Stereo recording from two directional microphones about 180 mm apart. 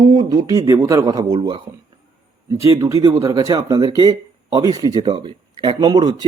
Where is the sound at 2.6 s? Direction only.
20° right (ahead or behind).